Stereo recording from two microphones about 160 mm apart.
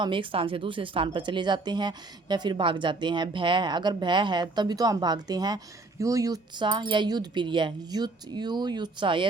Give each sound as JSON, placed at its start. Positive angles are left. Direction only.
{"t": 0.0, "sound": "speech", "side_deg": -30}